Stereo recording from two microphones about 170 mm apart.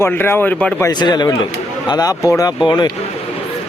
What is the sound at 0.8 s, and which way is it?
Speech, 25° left (ahead or behind).